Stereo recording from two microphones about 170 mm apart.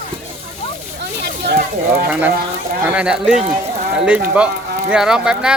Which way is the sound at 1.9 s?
10° right (ahead or behind).